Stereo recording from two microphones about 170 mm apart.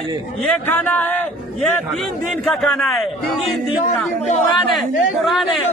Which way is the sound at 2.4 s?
Centre (ahead or behind).